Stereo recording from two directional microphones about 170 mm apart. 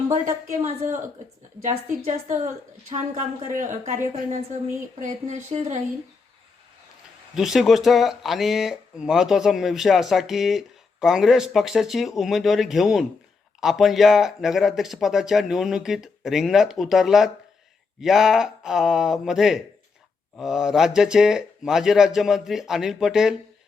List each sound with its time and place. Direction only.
0.6 s speech: 50° right (ahead or behind)
7.3 s speech: centre (ahead or behind)